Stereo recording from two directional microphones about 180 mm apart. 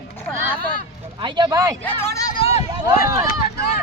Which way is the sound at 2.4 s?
35° left (ahead or behind).